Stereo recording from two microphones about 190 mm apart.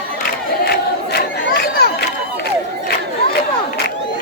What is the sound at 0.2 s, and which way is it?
Battle cry, 55° left (ahead or behind).